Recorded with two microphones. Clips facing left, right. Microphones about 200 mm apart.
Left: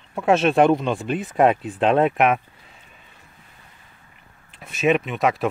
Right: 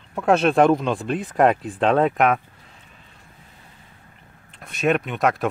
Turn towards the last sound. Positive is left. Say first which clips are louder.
# even
turn(degrees=0)  # may be behind; listen again after turning